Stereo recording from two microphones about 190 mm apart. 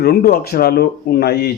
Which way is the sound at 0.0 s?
55° left (ahead or behind).